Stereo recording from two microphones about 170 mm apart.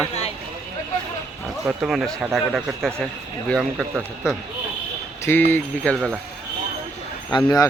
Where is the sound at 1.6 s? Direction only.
5° right (ahead or behind).